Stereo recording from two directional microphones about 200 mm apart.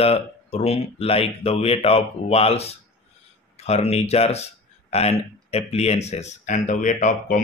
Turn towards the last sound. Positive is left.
turn(degrees=40)  # may be behind; listen again after turning